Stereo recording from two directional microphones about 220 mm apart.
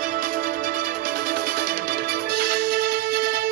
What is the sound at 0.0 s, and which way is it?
Music, 40° right (ahead or behind).